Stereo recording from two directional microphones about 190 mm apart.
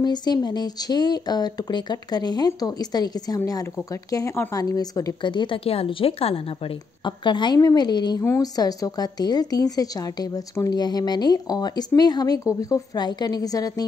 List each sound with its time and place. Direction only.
0.0 s a woman's voice: 20° left (ahead or behind)